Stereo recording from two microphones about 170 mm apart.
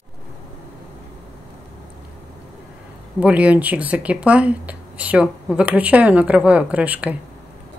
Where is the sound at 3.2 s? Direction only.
10° right (ahead or behind).